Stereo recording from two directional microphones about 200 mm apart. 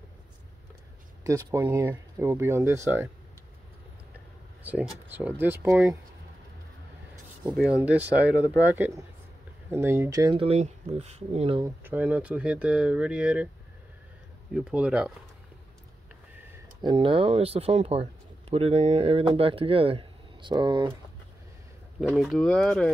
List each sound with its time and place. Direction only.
1.2 s speech: 15° right (ahead or behind)
4.6 s speech: 10° right (ahead or behind)
7.5 s speech: 5° right (ahead or behind)
10.4 s speech: 30° right (ahead or behind)
11.6 s speech: 10° right (ahead or behind)
14.5 s speech: 5° right (ahead or behind)
16.8 s speech: 25° right (ahead or behind)
22.0 s speech: centre (ahead or behind)